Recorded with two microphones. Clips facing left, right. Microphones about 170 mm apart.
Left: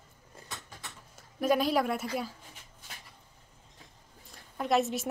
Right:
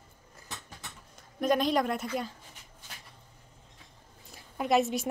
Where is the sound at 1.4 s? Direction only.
5° left (ahead or behind).